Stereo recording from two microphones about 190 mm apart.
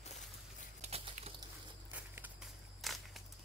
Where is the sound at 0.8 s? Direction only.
30° right (ahead or behind).